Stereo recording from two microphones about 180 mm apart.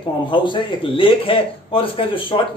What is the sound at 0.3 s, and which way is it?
A man's voice, 25° left (ahead or behind).